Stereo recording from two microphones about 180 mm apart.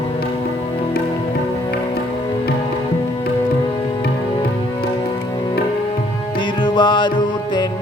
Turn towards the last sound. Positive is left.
turn(degrees=25)  # may be behind; listen again after turning